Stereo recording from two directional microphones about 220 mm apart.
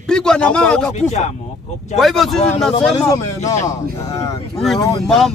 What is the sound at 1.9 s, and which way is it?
Speech, centre (ahead or behind).